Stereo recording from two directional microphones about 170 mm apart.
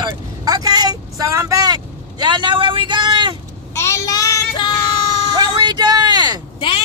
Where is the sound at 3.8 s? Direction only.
20° left (ahead or behind).